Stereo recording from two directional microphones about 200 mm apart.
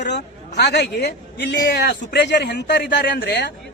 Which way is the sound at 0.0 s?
55° left (ahead or behind).